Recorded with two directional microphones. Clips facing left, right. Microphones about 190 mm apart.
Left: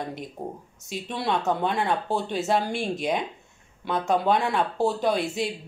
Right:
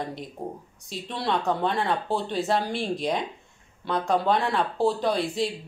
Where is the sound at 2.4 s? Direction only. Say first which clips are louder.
Left 1 dB; centre (ahead or behind).